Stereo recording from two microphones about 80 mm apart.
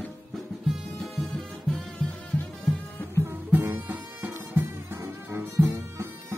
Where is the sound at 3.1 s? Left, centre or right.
Right.